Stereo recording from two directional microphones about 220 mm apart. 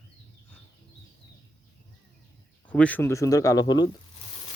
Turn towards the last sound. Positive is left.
turn(degrees=20)  # may be behind; listen again after turning